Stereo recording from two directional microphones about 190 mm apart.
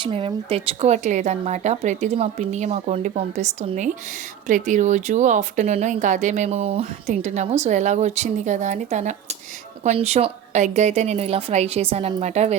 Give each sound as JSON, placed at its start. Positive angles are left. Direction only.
{"t": 0.0, "sound": "speech", "side_deg": -30}